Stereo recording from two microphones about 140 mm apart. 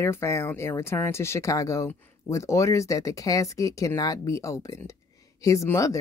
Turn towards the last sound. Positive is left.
turn(degrees=20)  # may be behind; listen again after turning